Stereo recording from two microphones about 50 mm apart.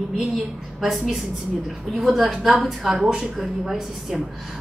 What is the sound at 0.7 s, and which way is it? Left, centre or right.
A woman's voice, centre.